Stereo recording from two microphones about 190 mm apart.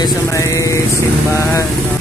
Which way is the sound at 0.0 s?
15° left (ahead or behind).